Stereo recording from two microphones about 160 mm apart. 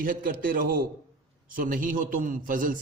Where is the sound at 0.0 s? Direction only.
65° right (ahead or behind).